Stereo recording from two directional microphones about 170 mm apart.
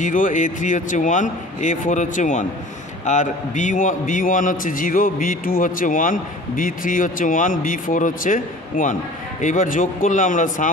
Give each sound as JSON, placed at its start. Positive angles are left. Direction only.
{"t": 0.0, "sound": "a man's voice", "side_deg": 50}